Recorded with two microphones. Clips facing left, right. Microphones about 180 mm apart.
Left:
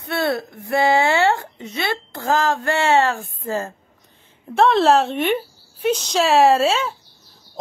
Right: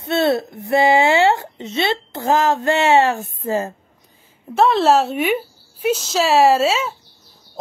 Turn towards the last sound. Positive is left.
turn(degrees=0)  # may be behind; listen again after turning